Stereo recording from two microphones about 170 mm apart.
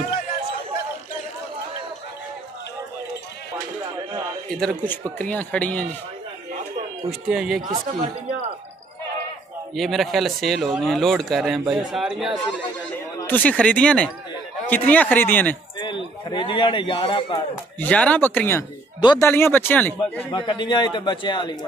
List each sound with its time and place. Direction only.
4.6 s speech: 5° left (ahead or behind)
7.1 s speech: 5° right (ahead or behind)
7.6 s speech: 50° right (ahead or behind)
9.8 s speech: centre (ahead or behind)
13.2 s speech: 10° left (ahead or behind)
16.3 s a man's voice: 30° left (ahead or behind)
17.7 s speech: 10° left (ahead or behind)
18.9 s speech: 25° left (ahead or behind)
19.2 s speech: 15° left (ahead or behind)
20.3 s a man's voice: 30° left (ahead or behind)